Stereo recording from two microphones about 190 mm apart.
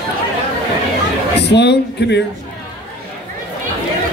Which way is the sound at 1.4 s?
65° left (ahead or behind).